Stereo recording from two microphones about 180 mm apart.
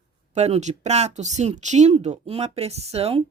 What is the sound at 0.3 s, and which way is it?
Speech, 35° right (ahead or behind).